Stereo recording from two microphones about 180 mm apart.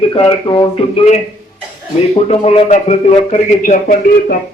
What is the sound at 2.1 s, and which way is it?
A man's voice, 35° left (ahead or behind).